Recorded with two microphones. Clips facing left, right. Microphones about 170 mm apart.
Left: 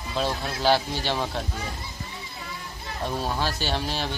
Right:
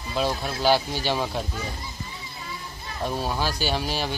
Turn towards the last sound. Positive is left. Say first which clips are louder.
# right 2 dB
turn(degrees=-5)  # may be behind; listen again after turning